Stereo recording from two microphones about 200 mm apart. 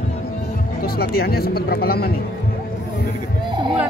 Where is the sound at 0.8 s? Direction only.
50° left (ahead or behind).